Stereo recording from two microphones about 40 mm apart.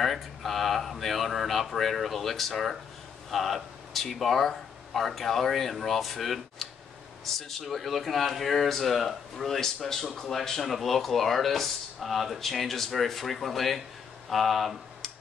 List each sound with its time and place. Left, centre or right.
0.0 s speech: centre